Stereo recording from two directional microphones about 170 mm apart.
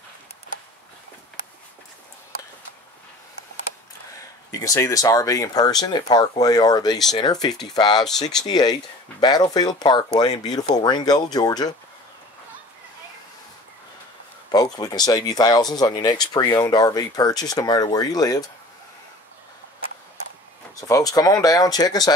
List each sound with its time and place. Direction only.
4.5 s speech: 20° left (ahead or behind)
8.0 s speech: centre (ahead or behind)
8.5 s speech: 25° left (ahead or behind)
14.5 s speech: 25° left (ahead or behind)
20.8 s speech: 20° left (ahead or behind)